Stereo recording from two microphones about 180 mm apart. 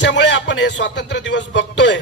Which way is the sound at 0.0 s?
80° left.